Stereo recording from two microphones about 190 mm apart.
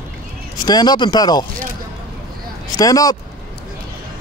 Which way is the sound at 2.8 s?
20° left (ahead or behind).